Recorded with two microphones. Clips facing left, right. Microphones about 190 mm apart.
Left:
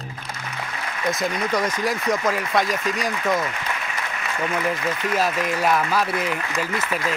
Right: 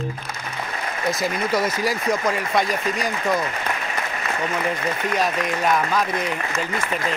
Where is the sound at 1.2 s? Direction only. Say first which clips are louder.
Right 1 dB; 5° right (ahead or behind).